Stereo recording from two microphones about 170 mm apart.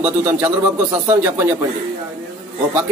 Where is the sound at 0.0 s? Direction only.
20° right (ahead or behind).